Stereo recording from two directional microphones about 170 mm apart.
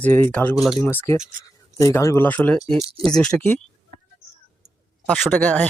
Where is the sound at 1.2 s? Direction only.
50° right (ahead or behind).